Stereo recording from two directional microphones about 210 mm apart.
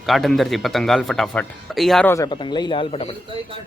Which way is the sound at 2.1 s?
20° left (ahead or behind).